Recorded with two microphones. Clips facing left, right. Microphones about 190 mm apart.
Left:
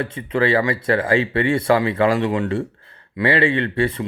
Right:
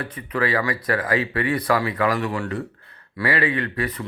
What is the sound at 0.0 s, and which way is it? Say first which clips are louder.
Speech: left 5 dB; 25° left (ahead or behind).